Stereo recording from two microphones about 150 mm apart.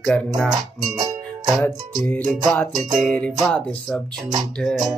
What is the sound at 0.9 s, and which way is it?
Music, 25° right (ahead or behind).